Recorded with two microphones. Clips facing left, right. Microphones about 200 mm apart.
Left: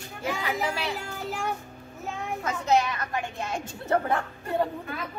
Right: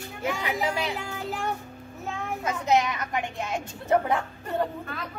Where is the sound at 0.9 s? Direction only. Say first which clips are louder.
Right 1 dB; centre (ahead or behind).